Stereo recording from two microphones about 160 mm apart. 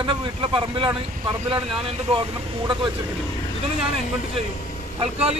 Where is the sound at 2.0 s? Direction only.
30° right (ahead or behind).